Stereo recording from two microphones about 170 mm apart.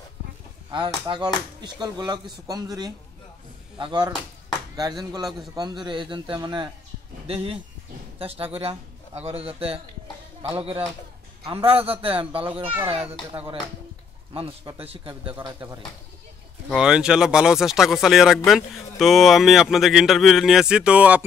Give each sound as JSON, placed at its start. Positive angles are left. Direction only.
{"t": 0.7, "sound": "a man's voice", "side_deg": -25}
{"t": 14.3, "sound": "a man's voice", "side_deg": -30}
{"t": 15.4, "sound": "speech", "side_deg": -20}
{"t": 16.6, "sound": "speech", "side_deg": -5}